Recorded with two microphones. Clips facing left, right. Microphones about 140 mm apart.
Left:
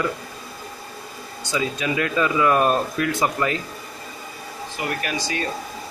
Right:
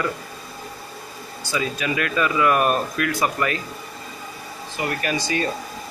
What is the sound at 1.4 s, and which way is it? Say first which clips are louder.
Speech: left 1 dB; 20° left (ahead or behind).